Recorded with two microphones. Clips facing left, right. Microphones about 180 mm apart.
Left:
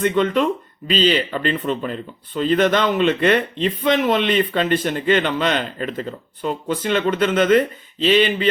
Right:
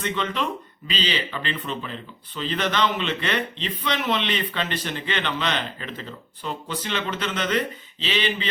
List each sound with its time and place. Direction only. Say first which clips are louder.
0.0 s speech: left 9 dB; 50° left (ahead or behind)